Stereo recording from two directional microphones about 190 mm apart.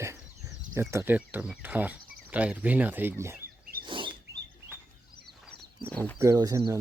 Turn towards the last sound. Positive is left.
turn(degrees=-20)  # may be behind; listen again after turning